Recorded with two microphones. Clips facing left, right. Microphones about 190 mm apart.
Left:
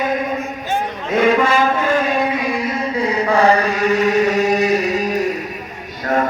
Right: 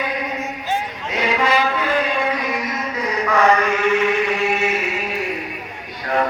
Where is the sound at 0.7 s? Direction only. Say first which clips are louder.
Left 6 dB; 50° left (ahead or behind).